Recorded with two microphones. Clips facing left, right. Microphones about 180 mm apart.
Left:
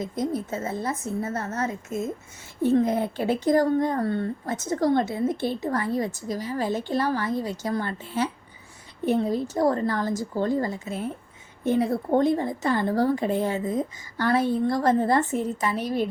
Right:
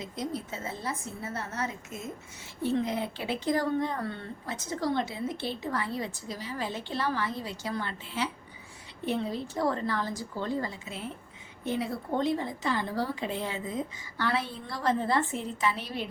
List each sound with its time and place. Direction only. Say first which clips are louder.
0.0 s speech: left 7 dB; 45° left (ahead or behind)